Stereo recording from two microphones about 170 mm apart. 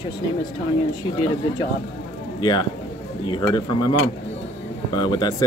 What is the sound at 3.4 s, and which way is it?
Speech, 25° left (ahead or behind).